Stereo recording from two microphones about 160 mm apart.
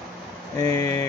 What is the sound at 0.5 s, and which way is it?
Speech, 20° left (ahead or behind).